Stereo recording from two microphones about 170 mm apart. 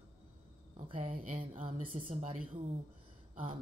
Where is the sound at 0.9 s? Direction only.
55° right (ahead or behind).